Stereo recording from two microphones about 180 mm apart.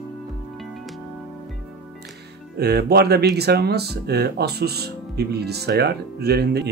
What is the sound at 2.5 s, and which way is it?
Speech, 65° right (ahead or behind).